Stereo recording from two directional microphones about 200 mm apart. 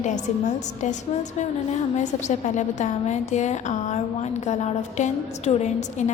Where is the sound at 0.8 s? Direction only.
35° left (ahead or behind).